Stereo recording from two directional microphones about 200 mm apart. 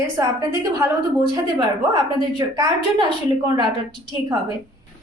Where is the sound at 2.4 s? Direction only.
20° right (ahead or behind).